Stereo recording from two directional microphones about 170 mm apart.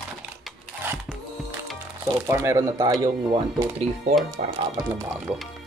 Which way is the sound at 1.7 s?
5° right (ahead or behind).